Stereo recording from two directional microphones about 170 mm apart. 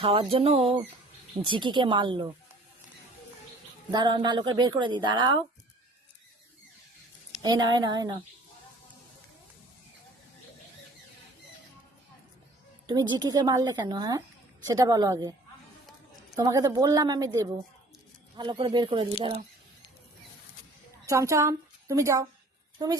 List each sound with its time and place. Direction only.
0.0 s a sound: 35° right (ahead or behind)
1.5 s a woman's voice: 30° right (ahead or behind)
3.9 s a woman's voice: 25° right (ahead or behind)
7.4 s a woman's voice: 25° right (ahead or behind)
12.9 s a woman's voice: 25° right (ahead or behind)
21.1 s a woman's voice: 15° right (ahead or behind)